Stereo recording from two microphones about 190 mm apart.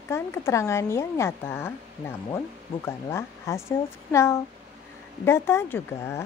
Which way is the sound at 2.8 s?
15° left (ahead or behind).